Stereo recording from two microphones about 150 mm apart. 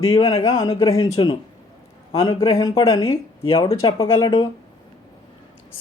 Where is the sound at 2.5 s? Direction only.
20° left (ahead or behind).